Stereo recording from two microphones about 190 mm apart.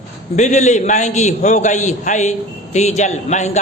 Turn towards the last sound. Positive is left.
turn(degrees=35)  # may be behind; listen again after turning